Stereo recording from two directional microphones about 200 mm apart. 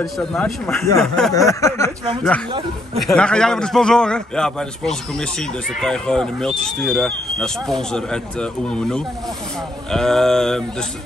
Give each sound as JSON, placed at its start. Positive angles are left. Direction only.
{"t": 0.0, "sound": "speech", "side_deg": 0}
{"t": 1.3, "sound": "a sound", "side_deg": 15}
{"t": 3.0, "sound": "speech", "side_deg": 5}